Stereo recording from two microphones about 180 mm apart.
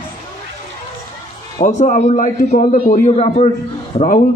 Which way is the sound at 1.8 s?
40° left (ahead or behind).